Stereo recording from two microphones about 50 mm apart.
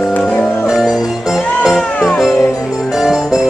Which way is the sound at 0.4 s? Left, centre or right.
Left.